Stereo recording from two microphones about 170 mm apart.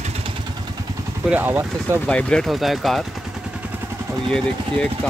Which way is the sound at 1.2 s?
10° right (ahead or behind).